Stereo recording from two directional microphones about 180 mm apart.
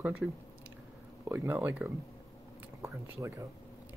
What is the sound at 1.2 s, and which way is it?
Speech, 15° right (ahead or behind).